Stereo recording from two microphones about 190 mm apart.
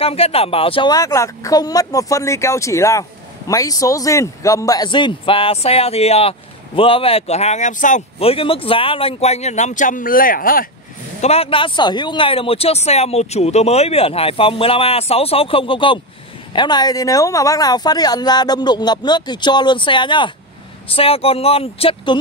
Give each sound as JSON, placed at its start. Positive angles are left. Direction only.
{"t": 0.0, "sound": "speech", "side_deg": 30}
{"t": 11.1, "sound": "speech", "side_deg": 35}